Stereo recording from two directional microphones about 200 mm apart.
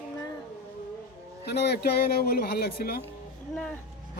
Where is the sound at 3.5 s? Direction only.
5° left (ahead or behind).